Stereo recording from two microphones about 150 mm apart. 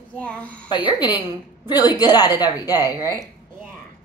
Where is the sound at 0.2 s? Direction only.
10° left (ahead or behind).